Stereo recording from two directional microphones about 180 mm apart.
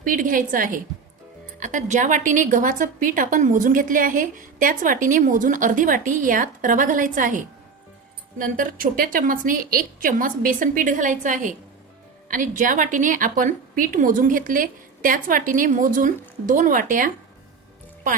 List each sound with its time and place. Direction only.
0.0 s a woman's voice: 50° right (ahead or behind)